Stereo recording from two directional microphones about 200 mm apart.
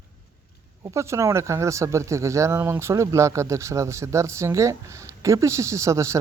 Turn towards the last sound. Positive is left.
turn(degrees=-15)  # may be behind; listen again after turning